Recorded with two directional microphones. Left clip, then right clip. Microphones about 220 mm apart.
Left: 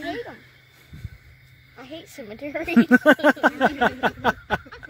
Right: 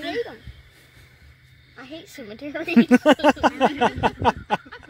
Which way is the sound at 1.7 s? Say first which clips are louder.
Even; 10° right (ahead or behind).